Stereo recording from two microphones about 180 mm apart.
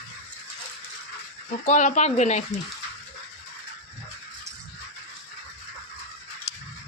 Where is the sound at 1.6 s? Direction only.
45° left (ahead or behind).